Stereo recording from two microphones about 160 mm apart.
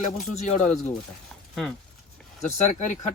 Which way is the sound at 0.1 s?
45° left (ahead or behind).